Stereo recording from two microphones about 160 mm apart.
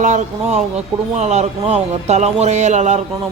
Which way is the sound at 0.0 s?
50° right (ahead or behind).